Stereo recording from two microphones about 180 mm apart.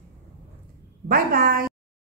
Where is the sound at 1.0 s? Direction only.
55° right (ahead or behind).